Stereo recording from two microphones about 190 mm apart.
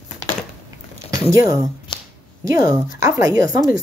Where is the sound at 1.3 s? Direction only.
15° right (ahead or behind).